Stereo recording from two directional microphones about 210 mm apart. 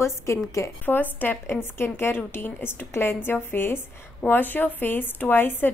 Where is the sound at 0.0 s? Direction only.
15° left (ahead or behind).